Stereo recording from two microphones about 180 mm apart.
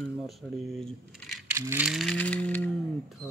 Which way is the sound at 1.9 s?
Centre (ahead or behind).